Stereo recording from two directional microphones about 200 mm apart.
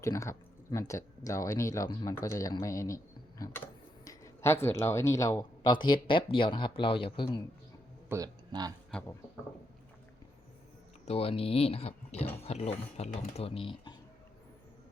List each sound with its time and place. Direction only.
0.0 s speech: 15° left (ahead or behind)
8.1 s speech: 20° right (ahead or behind)
8.9 s speech: 5° left (ahead or behind)
11.0 s speech: 30° left (ahead or behind)